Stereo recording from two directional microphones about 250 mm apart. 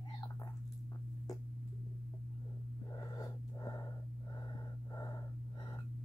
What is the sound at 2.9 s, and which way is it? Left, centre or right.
Breathing, centre.